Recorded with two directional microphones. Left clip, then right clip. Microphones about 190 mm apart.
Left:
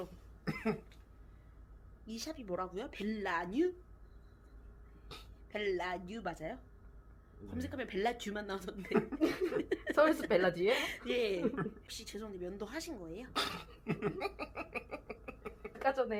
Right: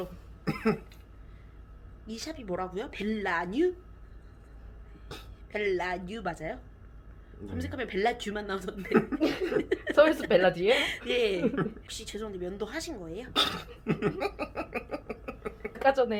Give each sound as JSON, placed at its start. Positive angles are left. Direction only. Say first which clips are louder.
{"t": 0.4, "sound": "cough", "louder": "right 8 dB", "side_deg": -10}
{"t": 2.0, "sound": "a woman's voice", "louder": "right 5 dB", "side_deg": 15}
{"t": 5.1, "sound": "speech", "louder": "right 7 dB", "side_deg": -10}
{"t": 5.5, "sound": "a woman's voice", "louder": "right 7 dB", "side_deg": 15}
{"t": 8.7, "sound": "speech", "louder": "right 8 dB", "side_deg": -10}
{"t": 9.2, "sound": "a woman's voice", "louder": "right 6 dB", "side_deg": 25}
{"t": 13.3, "sound": "a sound", "louder": "right 10 dB", "side_deg": -5}
{"t": 15.8, "sound": "speech", "louder": "right 9 dB", "side_deg": 20}